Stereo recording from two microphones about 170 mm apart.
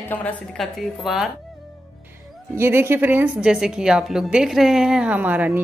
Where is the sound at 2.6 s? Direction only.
15° right (ahead or behind).